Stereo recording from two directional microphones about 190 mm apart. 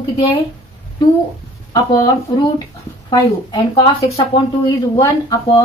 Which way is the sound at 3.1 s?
25° left (ahead or behind).